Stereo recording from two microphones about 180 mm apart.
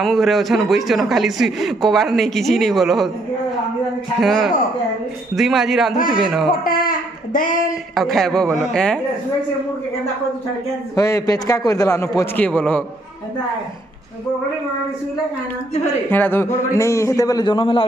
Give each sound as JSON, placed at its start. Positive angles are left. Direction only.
{"t": 0.0, "sound": "speech", "side_deg": 0}
{"t": 4.2, "sound": "speech", "side_deg": 0}
{"t": 6.6, "sound": "a sound", "side_deg": 50}
{"t": 7.9, "sound": "speech", "side_deg": 0}
{"t": 11.0, "sound": "a man's voice", "side_deg": 15}
{"t": 16.1, "sound": "a man's voice", "side_deg": 10}